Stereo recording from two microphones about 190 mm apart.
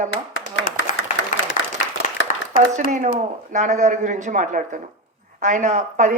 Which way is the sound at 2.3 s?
45° left (ahead or behind).